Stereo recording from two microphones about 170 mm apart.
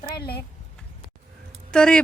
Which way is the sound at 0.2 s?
70° left (ahead or behind).